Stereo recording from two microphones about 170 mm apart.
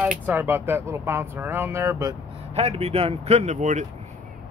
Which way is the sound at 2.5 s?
40° right (ahead or behind).